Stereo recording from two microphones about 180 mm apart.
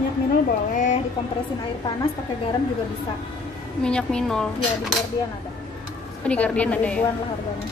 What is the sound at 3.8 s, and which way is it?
Speech, 5° left (ahead or behind).